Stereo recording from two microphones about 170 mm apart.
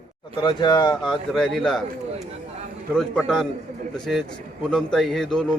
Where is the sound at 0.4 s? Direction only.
25° left (ahead or behind).